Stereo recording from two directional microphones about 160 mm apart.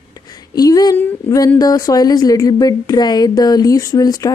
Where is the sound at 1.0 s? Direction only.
10° left (ahead or behind).